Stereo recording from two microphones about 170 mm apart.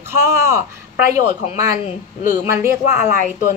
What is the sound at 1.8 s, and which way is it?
Speech, 50° left (ahead or behind).